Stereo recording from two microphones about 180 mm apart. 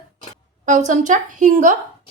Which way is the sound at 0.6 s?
45° right (ahead or behind).